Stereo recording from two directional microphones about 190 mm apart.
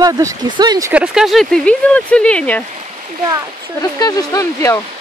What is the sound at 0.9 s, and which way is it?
Speech, 5° right (ahead or behind).